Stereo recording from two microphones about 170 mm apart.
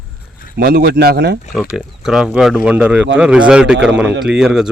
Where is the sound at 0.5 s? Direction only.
65° right (ahead or behind).